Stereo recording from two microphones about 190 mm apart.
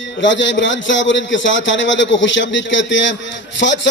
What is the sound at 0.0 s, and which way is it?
A man's voice, 75° left (ahead or behind).